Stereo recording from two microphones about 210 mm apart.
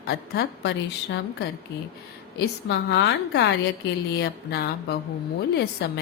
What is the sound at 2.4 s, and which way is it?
A woman's voice, 55° left (ahead or behind).